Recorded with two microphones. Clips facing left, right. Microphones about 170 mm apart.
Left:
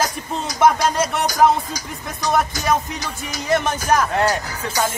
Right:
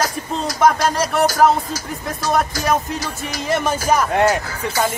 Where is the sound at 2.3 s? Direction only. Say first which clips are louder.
Right 1 dB; centre (ahead or behind).